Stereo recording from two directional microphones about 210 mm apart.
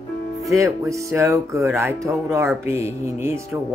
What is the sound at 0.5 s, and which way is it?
Speech, 15° right (ahead or behind).